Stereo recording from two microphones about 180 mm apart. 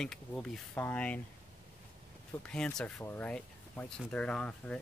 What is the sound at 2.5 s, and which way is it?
Speech, 5° left (ahead or behind).